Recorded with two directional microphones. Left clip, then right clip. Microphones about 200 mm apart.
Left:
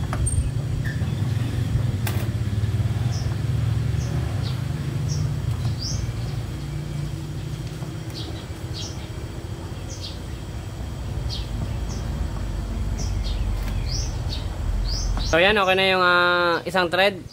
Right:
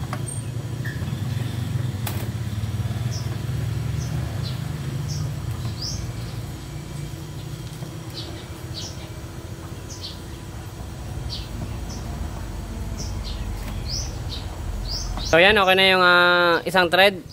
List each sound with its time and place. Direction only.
15.3 s speech: 35° right (ahead or behind)